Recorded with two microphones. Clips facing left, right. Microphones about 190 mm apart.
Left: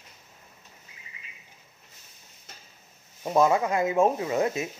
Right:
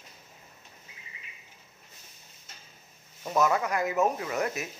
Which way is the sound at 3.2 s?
25° left (ahead or behind).